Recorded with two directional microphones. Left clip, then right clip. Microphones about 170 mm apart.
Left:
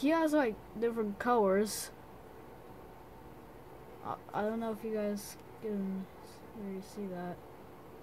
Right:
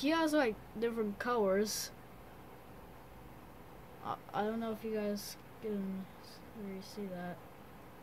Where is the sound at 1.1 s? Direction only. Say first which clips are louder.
Left 4 dB; 25° left (ahead or behind).